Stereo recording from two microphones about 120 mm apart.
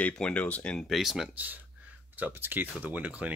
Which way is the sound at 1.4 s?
15° right (ahead or behind).